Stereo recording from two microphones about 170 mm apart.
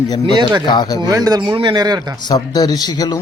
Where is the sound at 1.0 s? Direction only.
20° right (ahead or behind).